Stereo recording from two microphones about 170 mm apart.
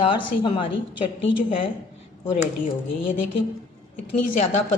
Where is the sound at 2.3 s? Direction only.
45° left (ahead or behind).